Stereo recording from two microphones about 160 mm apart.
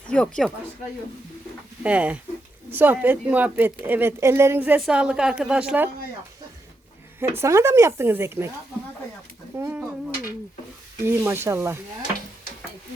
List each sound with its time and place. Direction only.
0.1 s speech: 5° left (ahead or behind)
1.8 s a woman's voice: 10° right (ahead or behind)
7.2 s speech: 15° right (ahead or behind)
9.6 s speech: 15° right (ahead or behind)
11.0 s speech: 15° right (ahead or behind)